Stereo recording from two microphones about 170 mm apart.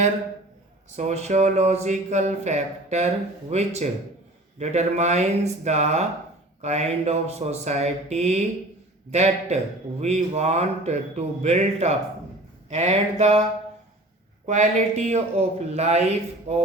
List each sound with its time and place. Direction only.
0.9 s speech: 40° right (ahead or behind)
14.4 s speech: 45° right (ahead or behind)